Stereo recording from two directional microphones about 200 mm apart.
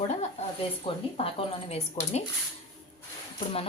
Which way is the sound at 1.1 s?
30° left (ahead or behind).